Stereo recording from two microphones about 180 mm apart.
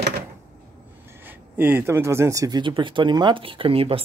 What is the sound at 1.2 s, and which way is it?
Speech, 10° right (ahead or behind).